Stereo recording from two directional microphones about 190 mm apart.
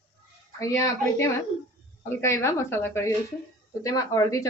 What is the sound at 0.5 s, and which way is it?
Speech, 15° left (ahead or behind).